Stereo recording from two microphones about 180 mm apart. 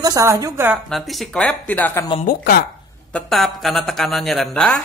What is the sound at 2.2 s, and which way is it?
Speech, 55° left (ahead or behind).